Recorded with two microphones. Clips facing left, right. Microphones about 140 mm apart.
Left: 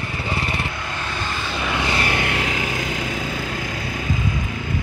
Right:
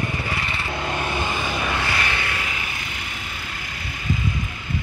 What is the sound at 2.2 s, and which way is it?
Vehicle, 70° left (ahead or behind).